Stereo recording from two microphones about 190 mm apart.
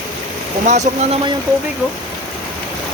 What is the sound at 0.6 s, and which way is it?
Speech, 35° right (ahead or behind).